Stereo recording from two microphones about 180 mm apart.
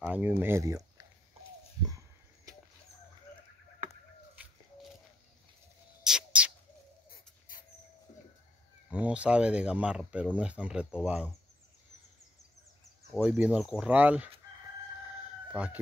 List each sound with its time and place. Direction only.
0.0 s speech: 10° right (ahead or behind)
6.0 s a sound: 5° right (ahead or behind)
7.1 s a sound: 50° left (ahead or behind)
8.9 s speech: 5° right (ahead or behind)
13.2 s speech: 5° right (ahead or behind)
15.5 s speech: 10° right (ahead or behind)